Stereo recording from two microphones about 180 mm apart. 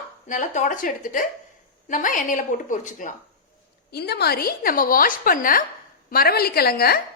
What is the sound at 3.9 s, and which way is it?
A woman's voice, 65° left (ahead or behind).